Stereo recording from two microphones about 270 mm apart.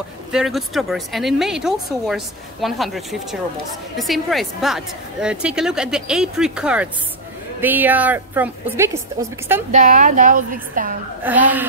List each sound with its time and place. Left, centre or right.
0.3 s a woman's voice: centre
9.7 s a woman's voice: right
11.2 s a woman's voice: centre